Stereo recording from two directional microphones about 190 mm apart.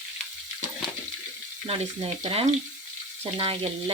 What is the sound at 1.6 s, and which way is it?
Frying, 30° right (ahead or behind).